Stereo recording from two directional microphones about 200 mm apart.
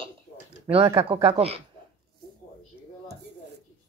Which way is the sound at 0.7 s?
30° right (ahead or behind).